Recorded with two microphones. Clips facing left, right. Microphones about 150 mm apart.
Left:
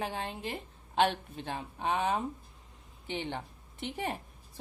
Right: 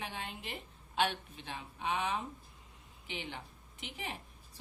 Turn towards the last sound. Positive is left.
turn(degrees=50)  # may be behind; listen again after turning